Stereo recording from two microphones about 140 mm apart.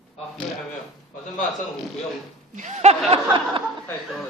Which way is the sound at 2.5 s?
60° right (ahead or behind).